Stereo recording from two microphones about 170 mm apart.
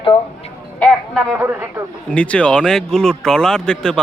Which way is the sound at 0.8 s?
Centre (ahead or behind).